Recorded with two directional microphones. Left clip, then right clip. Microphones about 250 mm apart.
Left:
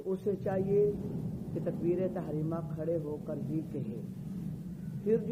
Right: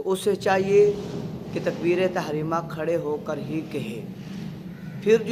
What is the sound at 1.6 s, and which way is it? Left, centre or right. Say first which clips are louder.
A man's voice: right 10 dB; centre.